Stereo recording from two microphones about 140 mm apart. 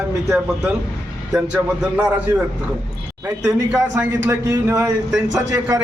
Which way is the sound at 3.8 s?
15° right (ahead or behind).